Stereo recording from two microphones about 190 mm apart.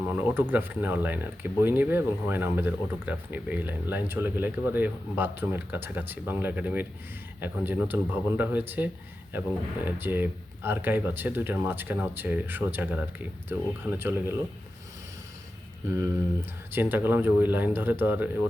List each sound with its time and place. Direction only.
0.0 s speech: 10° right (ahead or behind)
16.7 s speech: 10° right (ahead or behind)